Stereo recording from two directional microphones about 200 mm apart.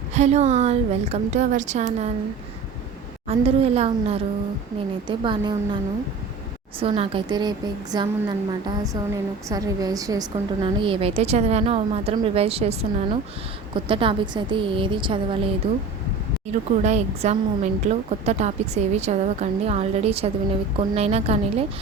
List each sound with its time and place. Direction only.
0.1 s a woman's voice: 35° right (ahead or behind)
3.2 s a woman's voice: 30° right (ahead or behind)
6.7 s a woman's voice: 30° right (ahead or behind)